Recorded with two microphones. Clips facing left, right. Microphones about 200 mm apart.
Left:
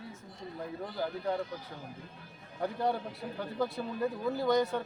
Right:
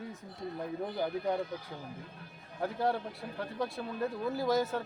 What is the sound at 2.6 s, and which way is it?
Speech, centre (ahead or behind).